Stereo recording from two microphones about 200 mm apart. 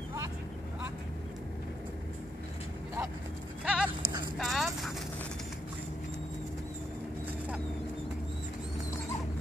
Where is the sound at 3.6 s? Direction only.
5° right (ahead or behind).